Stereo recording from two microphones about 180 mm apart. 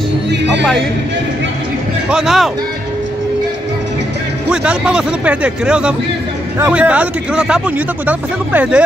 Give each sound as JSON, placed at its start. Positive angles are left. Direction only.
{"t": 0.3, "sound": "music", "side_deg": -75}
{"t": 2.0, "sound": "speech", "side_deg": -5}
{"t": 4.5, "sound": "speech", "side_deg": -5}